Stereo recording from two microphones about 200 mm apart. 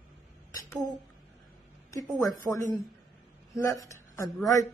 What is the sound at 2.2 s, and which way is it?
Speech, 15° left (ahead or behind).